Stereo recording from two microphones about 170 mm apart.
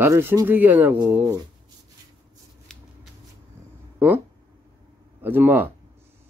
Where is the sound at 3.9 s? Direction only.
10° right (ahead or behind).